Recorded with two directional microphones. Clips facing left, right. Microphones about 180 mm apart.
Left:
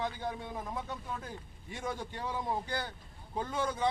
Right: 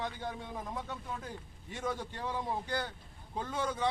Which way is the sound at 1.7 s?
10° left (ahead or behind).